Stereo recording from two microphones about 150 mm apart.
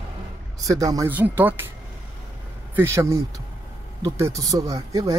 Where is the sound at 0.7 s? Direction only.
25° right (ahead or behind).